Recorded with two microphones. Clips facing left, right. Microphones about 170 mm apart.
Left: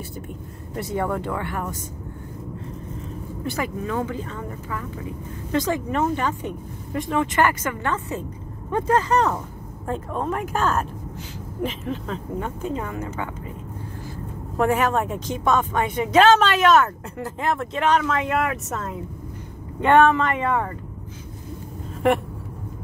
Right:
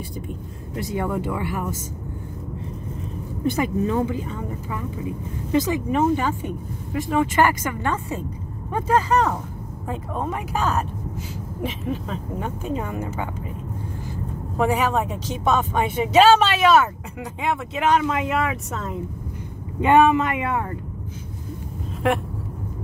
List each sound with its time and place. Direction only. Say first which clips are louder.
0.7 s speech: even; 5° right (ahead or behind)
3.4 s speech: right 6 dB; 20° right (ahead or behind)
5.5 s speech: right 2 dB; 5° right (ahead or behind)
14.6 s speech: left 1 dB; centre (ahead or behind)
18.3 s speech: even; centre (ahead or behind)
19.8 s speech: even; 10° right (ahead or behind)